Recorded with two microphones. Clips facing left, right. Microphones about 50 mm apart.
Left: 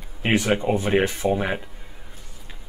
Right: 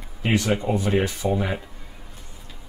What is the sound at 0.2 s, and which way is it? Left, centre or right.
Speech, left.